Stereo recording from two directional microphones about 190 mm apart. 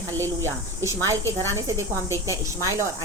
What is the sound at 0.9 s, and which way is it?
A woman's voice, 15° right (ahead or behind).